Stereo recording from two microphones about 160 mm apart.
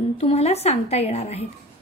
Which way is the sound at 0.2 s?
40° left (ahead or behind).